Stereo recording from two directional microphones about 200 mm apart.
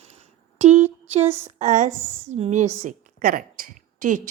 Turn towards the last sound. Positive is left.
turn(degrees=-40)  # may be behind; listen again after turning